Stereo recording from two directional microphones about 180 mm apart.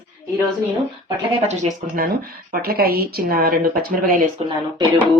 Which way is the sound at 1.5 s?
40° right (ahead or behind).